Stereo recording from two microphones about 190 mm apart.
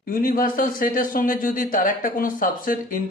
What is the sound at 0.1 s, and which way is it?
Speech, 45° left (ahead or behind).